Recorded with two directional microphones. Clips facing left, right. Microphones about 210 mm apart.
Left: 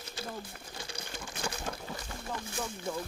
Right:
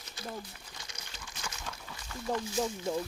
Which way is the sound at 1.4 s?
35° left (ahead or behind).